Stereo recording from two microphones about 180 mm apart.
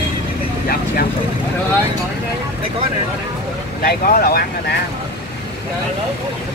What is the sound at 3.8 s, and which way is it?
Speech, 55° left (ahead or behind).